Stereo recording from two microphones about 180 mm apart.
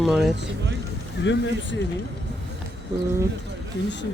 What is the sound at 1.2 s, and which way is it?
Speech, 90° left.